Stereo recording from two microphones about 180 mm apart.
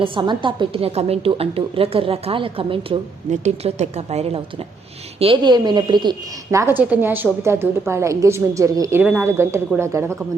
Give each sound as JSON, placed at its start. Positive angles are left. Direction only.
{"t": 0.0, "sound": "a woman's voice", "side_deg": -30}